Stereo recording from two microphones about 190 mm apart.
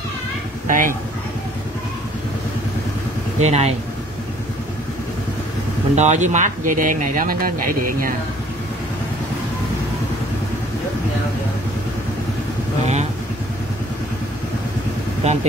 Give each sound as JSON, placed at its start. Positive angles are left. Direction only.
{"t": 0.7, "sound": "speech", "side_deg": -45}
{"t": 3.3, "sound": "speech", "side_deg": -35}
{"t": 5.9, "sound": "speech", "side_deg": -40}
{"t": 15.2, "sound": "speech", "side_deg": -35}